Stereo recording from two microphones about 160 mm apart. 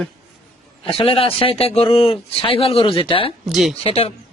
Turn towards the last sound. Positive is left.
turn(degrees=35)  # may be behind; listen again after turning